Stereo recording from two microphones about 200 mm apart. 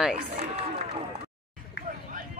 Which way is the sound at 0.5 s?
30° right (ahead or behind).